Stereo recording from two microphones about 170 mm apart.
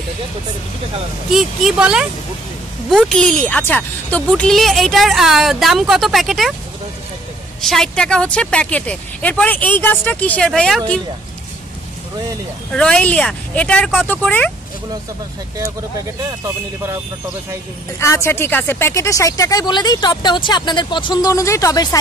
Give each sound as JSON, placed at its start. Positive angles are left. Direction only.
{"t": 1.3, "sound": "speech", "side_deg": -5}
{"t": 7.6, "sound": "a woman's voice", "side_deg": 5}
{"t": 12.7, "sound": "a woman's voice", "side_deg": 5}
{"t": 16.3, "sound": "speech", "side_deg": -15}
{"t": 17.9, "sound": "speech", "side_deg": 15}